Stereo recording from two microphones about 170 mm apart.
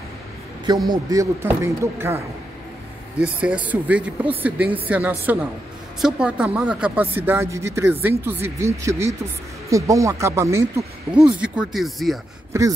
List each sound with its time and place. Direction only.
0.8 s speech: 20° right (ahead or behind)
10.8 s speech: 5° right (ahead or behind)
12.5 s speech: 15° right (ahead or behind)